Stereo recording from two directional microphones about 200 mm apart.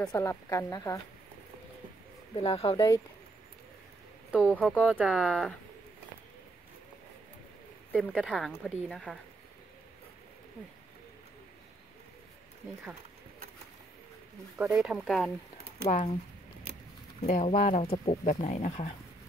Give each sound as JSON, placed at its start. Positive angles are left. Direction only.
{"t": 0.1, "sound": "a woman's voice", "side_deg": 15}
{"t": 2.4, "sound": "speech", "side_deg": 25}
{"t": 4.3, "sound": "speech", "side_deg": -5}
{"t": 7.9, "sound": "speech", "side_deg": 0}
{"t": 14.6, "sound": "speech", "side_deg": -5}
{"t": 17.2, "sound": "speech", "side_deg": 35}